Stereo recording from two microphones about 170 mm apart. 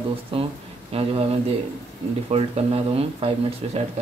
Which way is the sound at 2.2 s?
35° right (ahead or behind).